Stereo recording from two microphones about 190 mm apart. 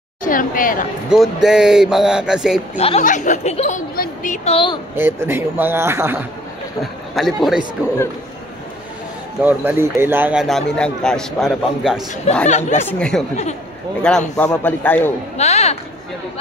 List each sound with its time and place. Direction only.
0.2 s speech: 45° left (ahead or behind)
1.1 s speech: centre (ahead or behind)
3.0 s a woman's voice: 40° left (ahead or behind)
4.9 s a man's voice: 10° right (ahead or behind)
6.8 s speech: centre (ahead or behind)
9.4 s a man's voice: 10° right (ahead or behind)
10.4 s speech: centre (ahead or behind)
12.4 s a woman's voice: 35° left (ahead or behind)
12.8 s speech: 5° left (ahead or behind)
14.3 s a man's voice: 10° left (ahead or behind)
15.3 s a woman's voice: 35° left (ahead or behind)